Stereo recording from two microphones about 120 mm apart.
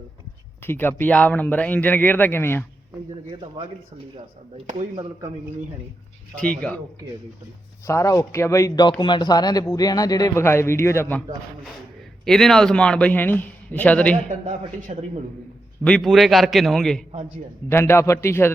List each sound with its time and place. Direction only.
0.6 s speech: 20° left (ahead or behind)
3.2 s speech: 45° right (ahead or behind)
6.3 s speech: 10° left (ahead or behind)
7.9 s speech: 25° left (ahead or behind)
12.2 s speech: 5° left (ahead or behind)
14.3 s a man's voice: 90° right
15.8 s a man's voice: 5° left (ahead or behind)
17.7 s speech: 20° left (ahead or behind)